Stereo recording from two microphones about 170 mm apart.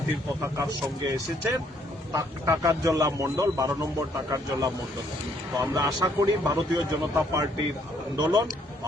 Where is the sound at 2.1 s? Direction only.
15° right (ahead or behind).